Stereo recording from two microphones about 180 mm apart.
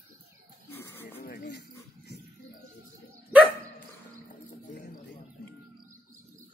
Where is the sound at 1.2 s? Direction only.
65° left (ahead or behind).